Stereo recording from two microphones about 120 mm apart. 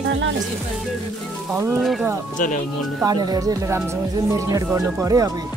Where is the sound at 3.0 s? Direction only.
35° right (ahead or behind).